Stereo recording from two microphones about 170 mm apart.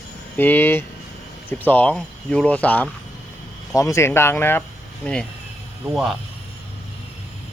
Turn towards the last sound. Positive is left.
turn(degrees=0)  # may be behind; listen again after turning